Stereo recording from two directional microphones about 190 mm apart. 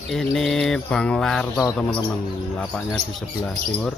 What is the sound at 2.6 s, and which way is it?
Bird, centre (ahead or behind).